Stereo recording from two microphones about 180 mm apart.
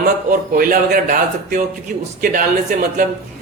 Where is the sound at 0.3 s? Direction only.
50° right (ahead or behind).